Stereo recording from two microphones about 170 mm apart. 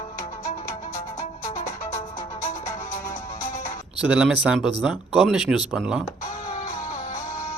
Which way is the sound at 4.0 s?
5° right (ahead or behind).